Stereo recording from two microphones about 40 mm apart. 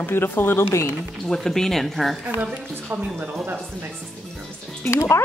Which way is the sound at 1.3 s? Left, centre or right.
Centre.